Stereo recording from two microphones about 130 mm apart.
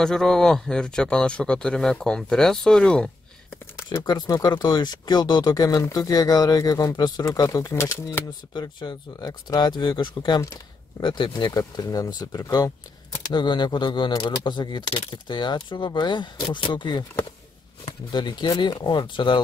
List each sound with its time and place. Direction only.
0.0 s speech: 5° left (ahead or behind)
3.9 s speech: 30° left (ahead or behind)
8.5 s speech: 35° left (ahead or behind)